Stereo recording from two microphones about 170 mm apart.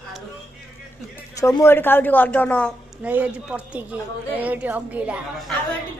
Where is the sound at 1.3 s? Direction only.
15° left (ahead or behind).